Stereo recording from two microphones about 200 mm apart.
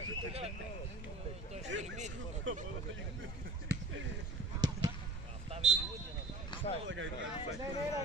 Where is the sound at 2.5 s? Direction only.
70° right (ahead or behind).